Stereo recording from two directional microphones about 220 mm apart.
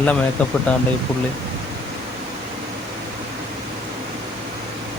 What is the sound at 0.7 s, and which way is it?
Speech, 5° left (ahead or behind).